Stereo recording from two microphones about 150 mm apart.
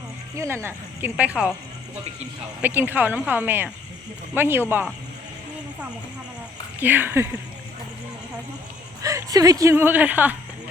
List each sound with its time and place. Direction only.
0.3 s speech: 15° right (ahead or behind)
2.6 s speech: 10° right (ahead or behind)
6.7 s speech: 15° right (ahead or behind)
9.0 s speech: 20° right (ahead or behind)